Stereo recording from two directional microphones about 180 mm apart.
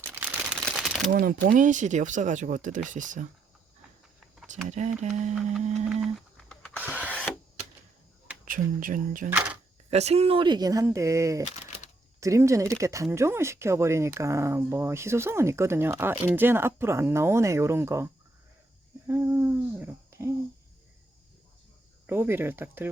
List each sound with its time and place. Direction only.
0.0 s single-lens reflex camera: 10° right (ahead or behind)
0.6 s a sound: centre (ahead or behind)
1.1 s speech: 50° right (ahead or behind)
4.7 s speech: 40° right (ahead or behind)
5.9 s a sound: centre (ahead or behind)
6.7 s wood: 10° right (ahead or behind)
7.0 s wood: 10° left (ahead or behind)
8.4 s speech: 50° right (ahead or behind)
9.9 s speech: 35° right (ahead or behind); by 11.4 s 15° right (ahead or behind)
11.4 s typewriter: 40° left (ahead or behind)
12.2 s speech: 15° right (ahead or behind)
22.0 s speech: 10° right (ahead or behind)